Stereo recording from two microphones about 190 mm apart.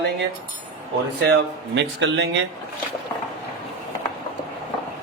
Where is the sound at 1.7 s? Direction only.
70° right (ahead or behind).